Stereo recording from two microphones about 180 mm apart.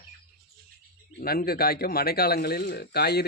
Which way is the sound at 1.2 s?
55° left (ahead or behind).